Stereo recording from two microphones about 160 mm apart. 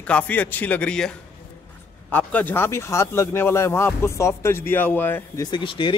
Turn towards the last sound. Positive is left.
turn(degrees=30)  # may be behind; listen again after turning